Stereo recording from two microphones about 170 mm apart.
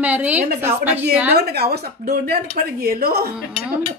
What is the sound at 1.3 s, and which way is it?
Speech, 65° right (ahead or behind).